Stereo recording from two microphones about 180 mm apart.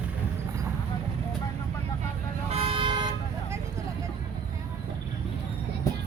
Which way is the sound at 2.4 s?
35° right (ahead or behind).